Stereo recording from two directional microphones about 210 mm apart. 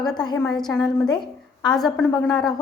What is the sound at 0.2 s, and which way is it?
A woman's voice, 15° left (ahead or behind).